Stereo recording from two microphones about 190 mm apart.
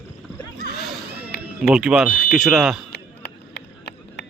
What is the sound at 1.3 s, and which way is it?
Run, 55° left (ahead or behind).